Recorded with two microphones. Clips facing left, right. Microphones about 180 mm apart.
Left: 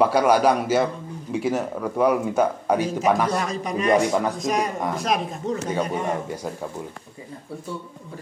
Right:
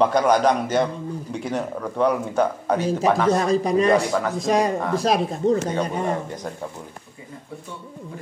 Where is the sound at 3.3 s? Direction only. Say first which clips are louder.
Right 6 dB; 35° right (ahead or behind).